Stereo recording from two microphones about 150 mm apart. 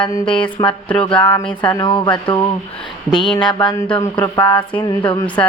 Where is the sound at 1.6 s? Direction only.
10° left (ahead or behind).